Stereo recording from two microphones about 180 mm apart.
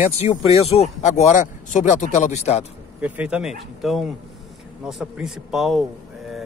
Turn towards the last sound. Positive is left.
turn(degrees=0)  # may be behind; listen again after turning